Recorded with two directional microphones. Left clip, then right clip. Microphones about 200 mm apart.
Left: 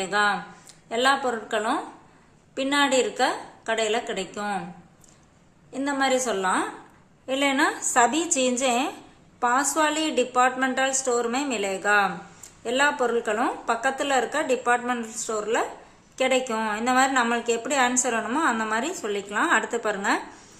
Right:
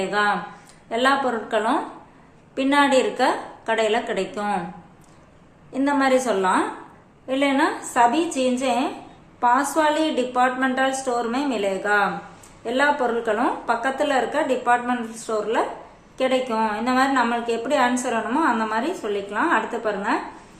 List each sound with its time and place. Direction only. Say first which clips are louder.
0.0 s a woman's voice: right 2 dB; 30° left (ahead or behind)
5.7 s a woman's voice: right 4 dB; 25° left (ahead or behind)